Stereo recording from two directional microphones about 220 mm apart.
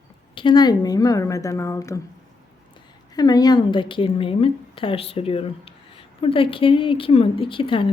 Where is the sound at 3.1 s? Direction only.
15° left (ahead or behind).